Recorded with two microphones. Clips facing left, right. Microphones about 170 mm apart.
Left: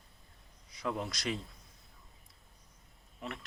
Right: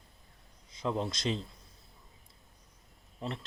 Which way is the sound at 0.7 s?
25° right (ahead or behind).